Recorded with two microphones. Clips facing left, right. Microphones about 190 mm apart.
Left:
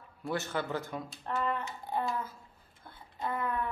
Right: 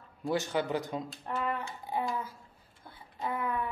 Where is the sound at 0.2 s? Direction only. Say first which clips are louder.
Right 3 dB; 15° right (ahead or behind).